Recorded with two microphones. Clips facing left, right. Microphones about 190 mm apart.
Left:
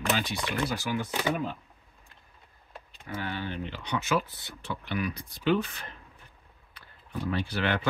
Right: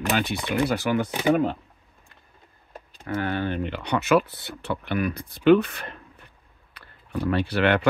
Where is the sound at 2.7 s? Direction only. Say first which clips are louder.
Right 9 dB; 45° right (ahead or behind).